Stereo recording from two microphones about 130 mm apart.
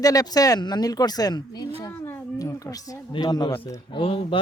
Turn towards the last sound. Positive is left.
turn(degrees=45)  # may be behind; listen again after turning